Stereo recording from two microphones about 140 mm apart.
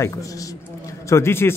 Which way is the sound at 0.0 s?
25° left (ahead or behind).